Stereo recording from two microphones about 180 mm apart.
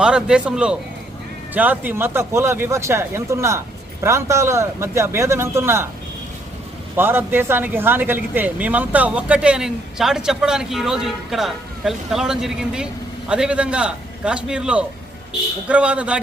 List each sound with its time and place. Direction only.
0.0 s speech: 5° right (ahead or behind)
6.9 s speech: 10° right (ahead or behind)